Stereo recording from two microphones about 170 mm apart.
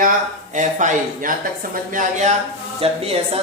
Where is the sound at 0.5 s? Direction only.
45° right (ahead or behind).